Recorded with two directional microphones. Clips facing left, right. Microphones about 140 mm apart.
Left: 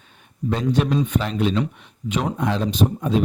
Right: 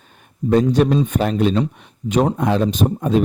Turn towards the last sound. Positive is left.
turn(degrees=-50)  # may be behind; listen again after turning